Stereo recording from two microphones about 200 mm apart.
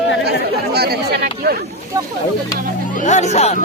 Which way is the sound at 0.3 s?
50° right (ahead or behind).